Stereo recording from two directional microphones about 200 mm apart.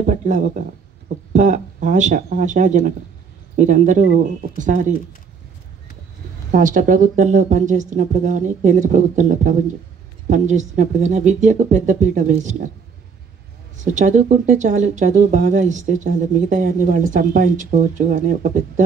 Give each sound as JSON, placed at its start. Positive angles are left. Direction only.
{"t": 0.0, "sound": "speech", "side_deg": -40}
{"t": 6.5, "sound": "speech", "side_deg": -40}
{"t": 13.7, "sound": "speech", "side_deg": -40}